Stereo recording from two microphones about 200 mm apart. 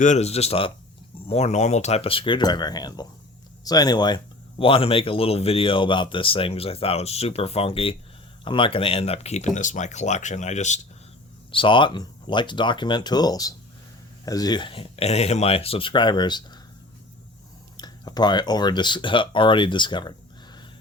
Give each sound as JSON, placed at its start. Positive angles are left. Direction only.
{"t": 0.0, "sound": "speech", "side_deg": 35}
{"t": 11.5, "sound": "speech", "side_deg": 25}
{"t": 17.7, "sound": "speech", "side_deg": 20}